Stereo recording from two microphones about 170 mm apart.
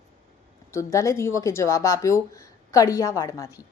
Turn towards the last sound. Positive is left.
turn(degrees=20)  # may be behind; listen again after turning